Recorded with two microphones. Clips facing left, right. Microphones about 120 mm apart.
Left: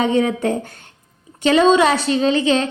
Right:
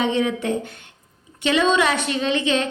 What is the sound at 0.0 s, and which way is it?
A woman's voice, 45° left (ahead or behind).